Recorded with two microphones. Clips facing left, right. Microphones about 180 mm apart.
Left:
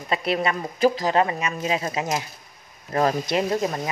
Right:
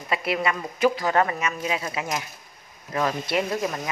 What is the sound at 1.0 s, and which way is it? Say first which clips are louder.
Speech: left 1 dB; 20° left (ahead or behind).